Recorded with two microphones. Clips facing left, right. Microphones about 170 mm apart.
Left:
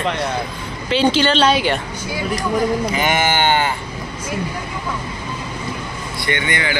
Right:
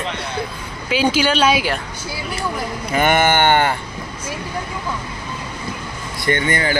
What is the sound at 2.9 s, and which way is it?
Sheep, 55° right (ahead or behind).